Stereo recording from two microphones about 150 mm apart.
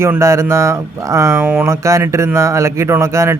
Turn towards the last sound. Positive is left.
turn(degrees=-20)  # may be behind; listen again after turning